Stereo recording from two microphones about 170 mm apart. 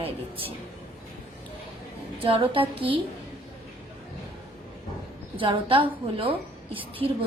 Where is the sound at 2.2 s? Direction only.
30° right (ahead or behind).